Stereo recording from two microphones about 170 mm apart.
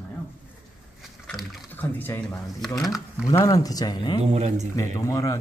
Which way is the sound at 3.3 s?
20° left (ahead or behind).